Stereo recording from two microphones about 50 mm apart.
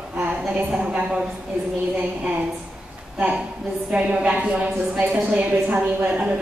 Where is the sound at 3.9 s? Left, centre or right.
Right.